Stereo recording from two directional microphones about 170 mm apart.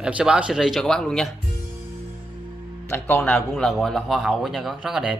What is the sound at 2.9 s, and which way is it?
Speech, 10° left (ahead or behind).